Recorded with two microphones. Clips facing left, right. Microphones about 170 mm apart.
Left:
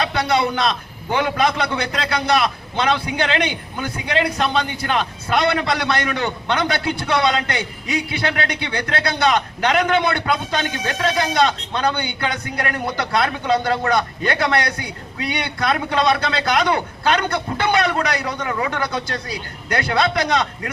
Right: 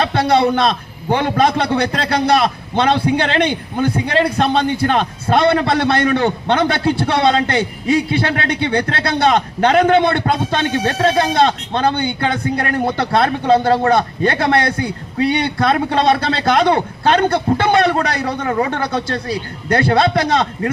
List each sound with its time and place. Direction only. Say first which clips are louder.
0.2 s a man's voice: right 6 dB; 35° right (ahead or behind)
11.7 s a man's voice: right 4 dB; 50° right (ahead or behind)
11.9 s a man's voice: right 6 dB; 30° right (ahead or behind)